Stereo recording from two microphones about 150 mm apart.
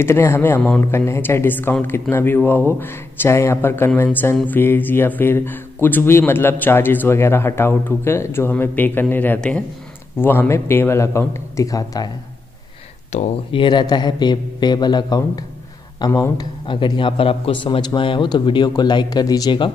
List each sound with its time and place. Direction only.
0.0 s speech: 15° left (ahead or behind)
0.6 s a man's voice: 5° left (ahead or behind)
0.9 s speech: 15° left (ahead or behind)
13.5 s a man's voice: 30° left (ahead or behind)